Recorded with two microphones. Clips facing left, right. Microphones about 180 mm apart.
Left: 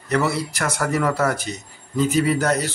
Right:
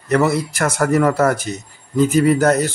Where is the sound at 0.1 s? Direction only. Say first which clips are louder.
Right 5 dB; 50° right (ahead or behind).